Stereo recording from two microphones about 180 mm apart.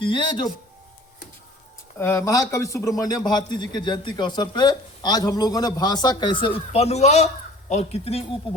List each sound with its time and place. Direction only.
0.0 s a man's voice: 25° left (ahead or behind)
2.0 s a man's voice: 15° left (ahead or behind); by 8.4 s 35° left (ahead or behind)